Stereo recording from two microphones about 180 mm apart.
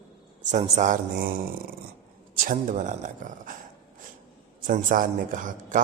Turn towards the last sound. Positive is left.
turn(degrees=-45)  # may be behind; listen again after turning